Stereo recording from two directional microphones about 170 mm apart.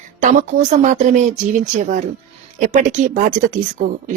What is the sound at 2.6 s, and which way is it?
Speech, 45° right (ahead or behind).